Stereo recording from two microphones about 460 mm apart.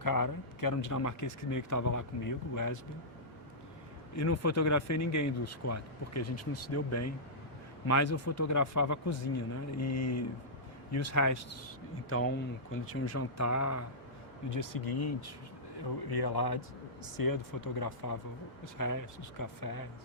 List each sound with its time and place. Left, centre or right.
0.0 s speech: left
4.1 s speech: left
12.0 s speech: left